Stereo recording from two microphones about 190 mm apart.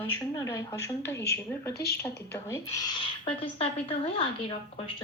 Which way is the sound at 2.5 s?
20° left (ahead or behind).